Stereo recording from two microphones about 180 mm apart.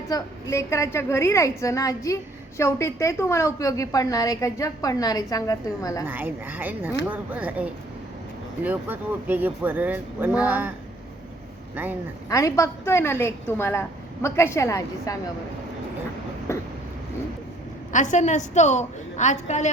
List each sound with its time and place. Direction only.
0.1 s a woman's voice: 15° left (ahead or behind)
6.1 s speech: 10° right (ahead or behind)
11.7 s speech: 10° right (ahead or behind)
12.3 s a woman's voice: 15° left (ahead or behind)
16.5 s vehicle: 15° left (ahead or behind)
17.9 s a woman's voice: 45° left (ahead or behind)